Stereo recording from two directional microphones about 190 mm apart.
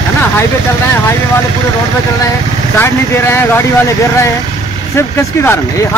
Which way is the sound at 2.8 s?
10° left (ahead or behind).